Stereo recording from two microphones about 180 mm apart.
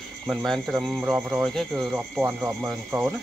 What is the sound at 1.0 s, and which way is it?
Speech, 10° right (ahead or behind).